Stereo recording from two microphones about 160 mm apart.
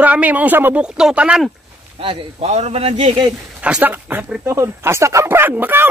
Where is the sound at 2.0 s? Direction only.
40° right (ahead or behind).